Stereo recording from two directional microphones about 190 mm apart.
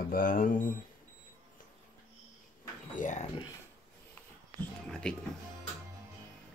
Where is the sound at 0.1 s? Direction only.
50° left (ahead or behind).